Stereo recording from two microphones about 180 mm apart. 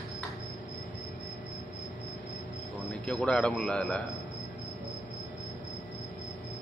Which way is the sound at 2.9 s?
5° left (ahead or behind).